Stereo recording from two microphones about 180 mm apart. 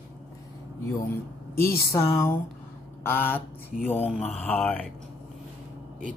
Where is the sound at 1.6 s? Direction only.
15° left (ahead or behind).